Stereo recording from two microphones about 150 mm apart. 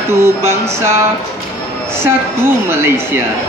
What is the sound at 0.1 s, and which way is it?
Speech, 20° right (ahead or behind).